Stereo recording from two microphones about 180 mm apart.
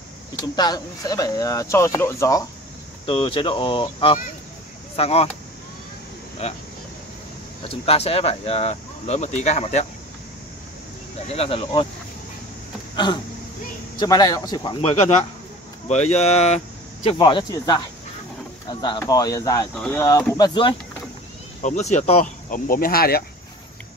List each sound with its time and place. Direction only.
0.6 s speech: 20° left (ahead or behind)
3.1 s speech: 25° left (ahead or behind)
7.6 s speech: 35° left (ahead or behind)
11.2 s speech: 35° left (ahead or behind)
12.9 s a sound: 25° left (ahead or behind)
13.9 s speech: 20° left (ahead or behind)
14.8 s speech: 35° left (ahead or behind); by 19.7 s 20° left (ahead or behind)
19.7 s speech: 10° left (ahead or behind); by 20.7 s 25° left (ahead or behind)
21.6 s speech: 40° left (ahead or behind)
22.5 s speech: 50° left (ahead or behind)